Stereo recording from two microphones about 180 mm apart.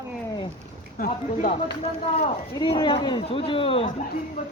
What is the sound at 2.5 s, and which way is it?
Speech, 25° left (ahead or behind).